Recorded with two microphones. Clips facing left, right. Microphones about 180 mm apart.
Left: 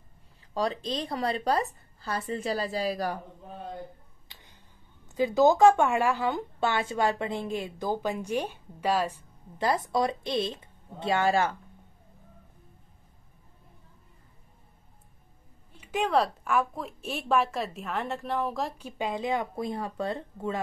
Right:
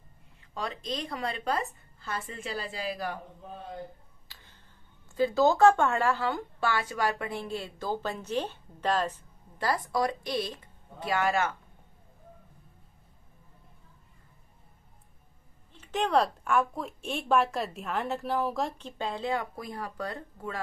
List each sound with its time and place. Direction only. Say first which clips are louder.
0.6 s a woman's voice: left 5 dB; 30° left (ahead or behind)
4.3 s a sound: left 1 dB; 15° left (ahead or behind)
5.1 s a woman's voice: left 2 dB; 15° left (ahead or behind)
9.6 s a woman's voice: left 2 dB; 20° left (ahead or behind)
15.8 s speech: even; 10° left (ahead or behind); by 20.6 s 25° left (ahead or behind)